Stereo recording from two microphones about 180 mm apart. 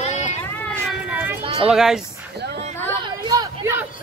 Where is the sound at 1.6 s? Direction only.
Centre (ahead or behind).